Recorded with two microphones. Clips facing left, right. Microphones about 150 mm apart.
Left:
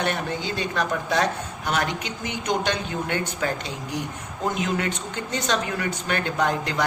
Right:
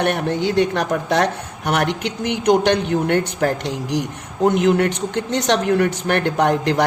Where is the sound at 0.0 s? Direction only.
65° right (ahead or behind).